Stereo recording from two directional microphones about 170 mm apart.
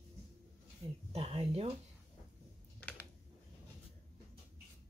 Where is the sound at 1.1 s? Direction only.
35° right (ahead or behind).